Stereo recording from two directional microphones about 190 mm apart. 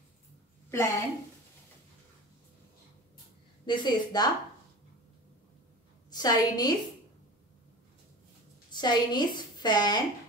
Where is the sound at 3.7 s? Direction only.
25° left (ahead or behind).